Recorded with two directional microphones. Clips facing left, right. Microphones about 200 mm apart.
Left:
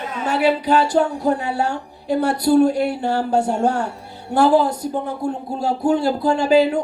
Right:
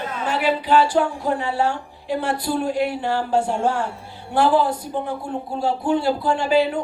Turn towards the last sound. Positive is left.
turn(degrees=40)  # may be behind; listen again after turning